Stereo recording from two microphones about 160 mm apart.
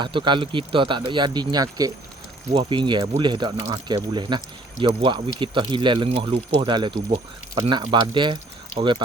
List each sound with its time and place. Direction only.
0.0 s speech: 30° right (ahead or behind)